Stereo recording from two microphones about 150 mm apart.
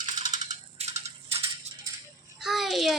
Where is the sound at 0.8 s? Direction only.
40° right (ahead or behind).